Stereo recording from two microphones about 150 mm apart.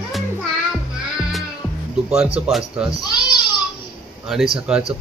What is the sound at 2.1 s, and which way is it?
Speech, 5° right (ahead or behind).